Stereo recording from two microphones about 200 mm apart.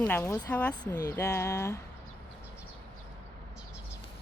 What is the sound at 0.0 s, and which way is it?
Speech, 10° left (ahead or behind).